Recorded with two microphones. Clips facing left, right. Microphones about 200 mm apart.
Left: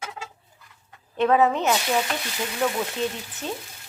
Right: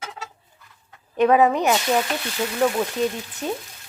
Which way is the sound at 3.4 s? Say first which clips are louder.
Right 4 dB; 10° right (ahead or behind).